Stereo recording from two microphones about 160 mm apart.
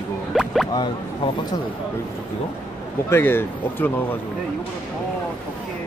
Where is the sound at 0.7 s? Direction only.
25° left (ahead or behind).